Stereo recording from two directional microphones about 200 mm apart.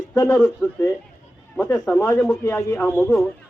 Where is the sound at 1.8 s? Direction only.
10° left (ahead or behind).